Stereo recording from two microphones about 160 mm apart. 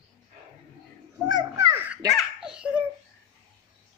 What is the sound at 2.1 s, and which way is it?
Baby laughter, 5° right (ahead or behind).